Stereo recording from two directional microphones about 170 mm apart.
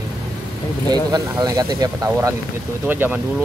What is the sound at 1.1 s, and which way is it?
Speech, 20° right (ahead or behind).